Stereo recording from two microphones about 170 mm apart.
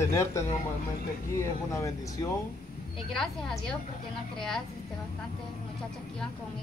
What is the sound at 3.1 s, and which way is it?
Speech, centre (ahead or behind).